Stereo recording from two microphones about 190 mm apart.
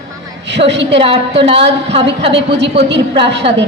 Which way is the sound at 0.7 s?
70° right (ahead or behind).